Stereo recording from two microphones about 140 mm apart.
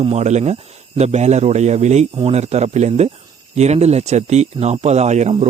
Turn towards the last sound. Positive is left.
turn(degrees=-50)  # may be behind; listen again after turning